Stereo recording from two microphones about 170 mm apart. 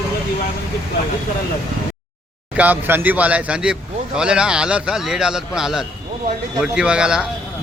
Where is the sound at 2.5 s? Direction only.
10° right (ahead or behind).